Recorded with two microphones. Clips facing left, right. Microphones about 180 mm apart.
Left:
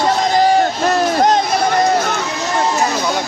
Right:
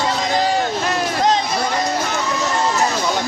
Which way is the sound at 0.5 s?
45° left (ahead or behind).